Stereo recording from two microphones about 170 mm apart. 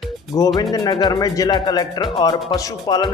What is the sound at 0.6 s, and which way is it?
Speech, 25° left (ahead or behind).